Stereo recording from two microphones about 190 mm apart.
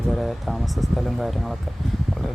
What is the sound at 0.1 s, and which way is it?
Speech, centre (ahead or behind).